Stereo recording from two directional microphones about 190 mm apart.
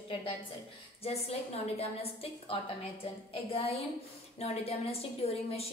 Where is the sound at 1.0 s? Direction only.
30° left (ahead or behind).